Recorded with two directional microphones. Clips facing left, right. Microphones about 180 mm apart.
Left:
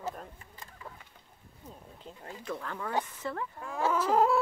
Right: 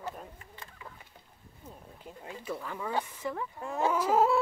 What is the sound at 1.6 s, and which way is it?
Speech, 10° right (ahead or behind).